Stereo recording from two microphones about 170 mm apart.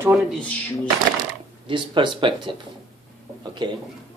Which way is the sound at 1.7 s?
30° right (ahead or behind).